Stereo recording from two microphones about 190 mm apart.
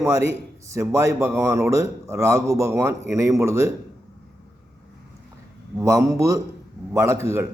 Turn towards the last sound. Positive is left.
turn(degrees=-15)  # may be behind; listen again after turning